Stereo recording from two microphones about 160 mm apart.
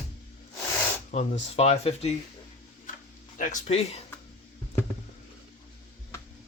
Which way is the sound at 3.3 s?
55° left (ahead or behind).